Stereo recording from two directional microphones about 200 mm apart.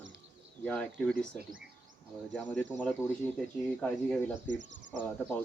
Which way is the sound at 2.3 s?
5° left (ahead or behind).